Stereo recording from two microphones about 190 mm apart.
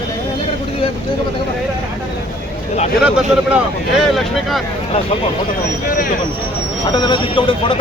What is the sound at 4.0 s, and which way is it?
Speech, centre (ahead or behind).